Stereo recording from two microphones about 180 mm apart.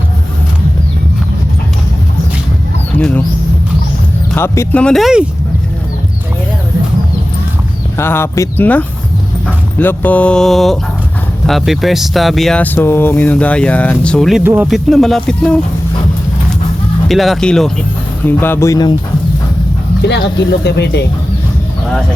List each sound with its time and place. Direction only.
3.0 s speech: 10° left (ahead or behind)
4.4 s speech: 15° left (ahead or behind)
7.9 s speech: 15° left (ahead or behind)
14.4 s speech: 10° right (ahead or behind)
17.1 s speech: centre (ahead or behind); by 18.9 s 20° left (ahead or behind)
20.1 s speech: 70° left (ahead or behind)